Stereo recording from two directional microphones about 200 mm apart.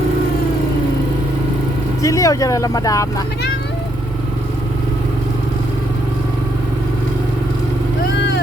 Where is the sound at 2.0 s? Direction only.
15° left (ahead or behind).